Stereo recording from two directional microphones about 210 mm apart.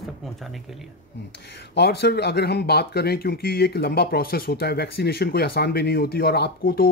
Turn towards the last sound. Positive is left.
turn(degrees=45)  # may be behind; listen again after turning